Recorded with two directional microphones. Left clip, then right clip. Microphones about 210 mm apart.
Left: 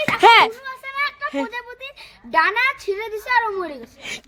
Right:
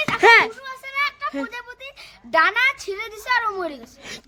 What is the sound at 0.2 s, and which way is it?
Speech, 5° left (ahead or behind).